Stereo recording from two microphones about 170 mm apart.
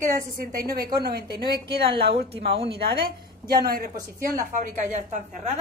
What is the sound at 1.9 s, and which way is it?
A woman's voice, 70° right (ahead or behind).